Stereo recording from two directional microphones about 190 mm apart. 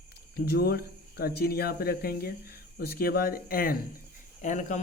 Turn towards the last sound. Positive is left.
turn(degrees=40)  # may be behind; listen again after turning